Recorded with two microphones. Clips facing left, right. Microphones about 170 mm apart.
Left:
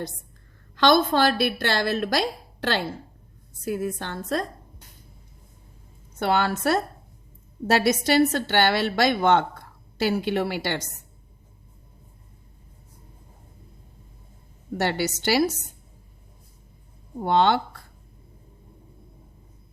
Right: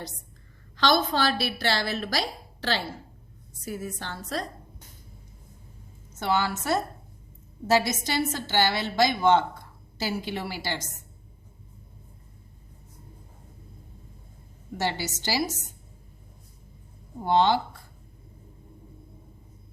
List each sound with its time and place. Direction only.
0.8 s a woman's voice: 55° left (ahead or behind)
6.1 s a woman's voice: 60° left (ahead or behind)
14.8 s a woman's voice: 60° left (ahead or behind)
17.2 s a woman's voice: 60° left (ahead or behind)